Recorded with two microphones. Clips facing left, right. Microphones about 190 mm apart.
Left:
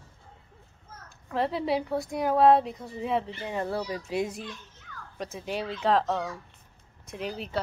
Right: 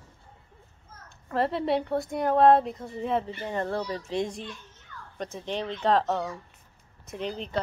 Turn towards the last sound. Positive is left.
turn(degrees=5)  # may be behind; listen again after turning